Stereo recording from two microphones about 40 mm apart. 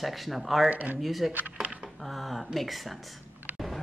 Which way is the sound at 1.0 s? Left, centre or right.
Centre.